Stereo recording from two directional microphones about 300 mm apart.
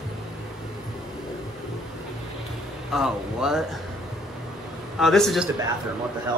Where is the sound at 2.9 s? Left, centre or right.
Centre.